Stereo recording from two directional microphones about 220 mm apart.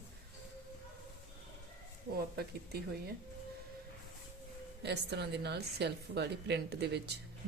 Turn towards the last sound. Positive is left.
turn(degrees=-50)  # may be behind; listen again after turning